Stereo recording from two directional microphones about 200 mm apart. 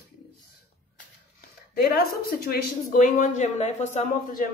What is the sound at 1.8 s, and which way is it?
Speech, 50° left (ahead or behind).